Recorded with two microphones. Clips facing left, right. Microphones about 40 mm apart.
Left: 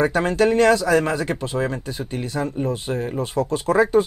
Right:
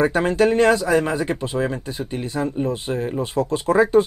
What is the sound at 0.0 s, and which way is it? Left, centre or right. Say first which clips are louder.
Speech: right 1 dB; right.